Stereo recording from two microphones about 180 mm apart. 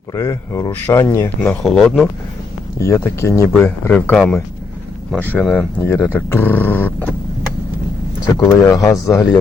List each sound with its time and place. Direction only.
0.1 s speech: 15° left (ahead or behind)
1.6 s speech: centre (ahead or behind)
2.7 s speech: 15° left (ahead or behind)
8.4 s speech: 15° left (ahead or behind)